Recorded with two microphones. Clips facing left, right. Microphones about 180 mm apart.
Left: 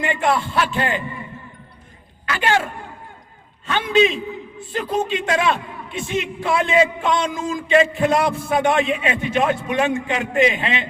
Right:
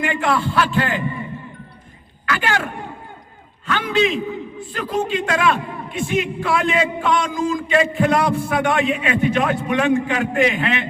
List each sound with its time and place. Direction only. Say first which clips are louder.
0.0 s a man's voice: even; 20° left (ahead or behind)
2.2 s speech: left 1 dB; 25° left (ahead or behind)
3.7 s a man's voice: left 2 dB; 20° left (ahead or behind)